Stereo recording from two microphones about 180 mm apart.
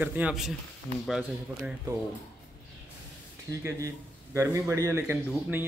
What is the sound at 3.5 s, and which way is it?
Speech, 15° right (ahead or behind).